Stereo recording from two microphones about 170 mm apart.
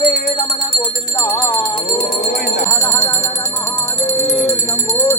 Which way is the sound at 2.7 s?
20° left (ahead or behind).